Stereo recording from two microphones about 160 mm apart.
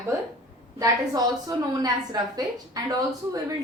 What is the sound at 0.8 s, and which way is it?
A woman's voice, 20° right (ahead or behind).